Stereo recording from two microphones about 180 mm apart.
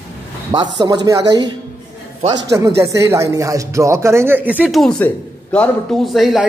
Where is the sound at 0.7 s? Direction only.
20° right (ahead or behind).